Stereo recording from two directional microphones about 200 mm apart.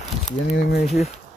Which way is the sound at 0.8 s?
35° left (ahead or behind).